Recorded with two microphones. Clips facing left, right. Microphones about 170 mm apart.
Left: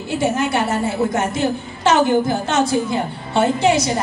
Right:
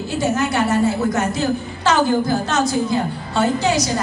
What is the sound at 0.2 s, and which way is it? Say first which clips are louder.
A woman's voice: even; 25° left (ahead or behind).